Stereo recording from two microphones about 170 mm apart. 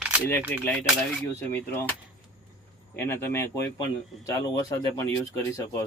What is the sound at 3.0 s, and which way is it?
Speech, 15° left (ahead or behind).